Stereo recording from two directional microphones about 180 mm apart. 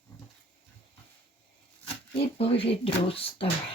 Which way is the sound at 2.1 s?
30° left (ahead or behind).